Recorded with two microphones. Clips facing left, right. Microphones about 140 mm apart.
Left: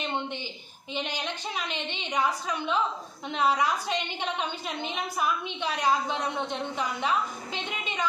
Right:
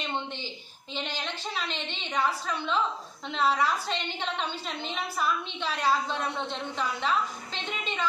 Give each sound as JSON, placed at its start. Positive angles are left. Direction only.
{"t": 0.9, "sound": "a woman's voice", "side_deg": 15}